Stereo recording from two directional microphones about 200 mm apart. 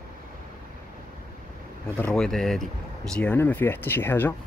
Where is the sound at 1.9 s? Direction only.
5° left (ahead or behind).